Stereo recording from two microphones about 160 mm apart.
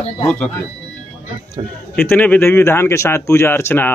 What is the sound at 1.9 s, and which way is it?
Speech, 10° left (ahead or behind).